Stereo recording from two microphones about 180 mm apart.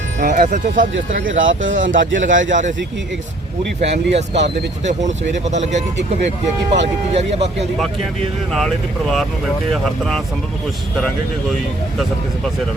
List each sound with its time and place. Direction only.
0.2 s speech: 50° right (ahead or behind)
1.4 s a man's voice: 90° right
3.9 s speech: 70° right (ahead or behind)
4.9 s speech: 40° right (ahead or behind)
7.1 s speech: 35° right (ahead or behind)
8.5 s speech: centre (ahead or behind)